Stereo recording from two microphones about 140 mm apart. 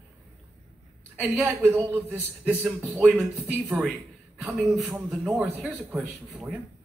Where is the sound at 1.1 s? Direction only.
10° right (ahead or behind).